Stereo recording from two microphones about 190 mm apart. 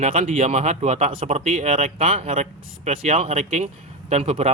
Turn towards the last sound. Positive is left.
turn(degrees=-35)  # may be behind; listen again after turning